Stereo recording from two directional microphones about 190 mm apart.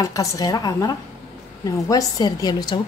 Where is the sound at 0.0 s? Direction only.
20° left (ahead or behind).